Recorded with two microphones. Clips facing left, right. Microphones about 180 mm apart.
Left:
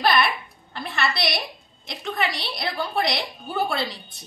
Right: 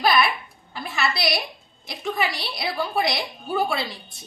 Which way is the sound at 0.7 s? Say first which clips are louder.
Even; centre (ahead or behind).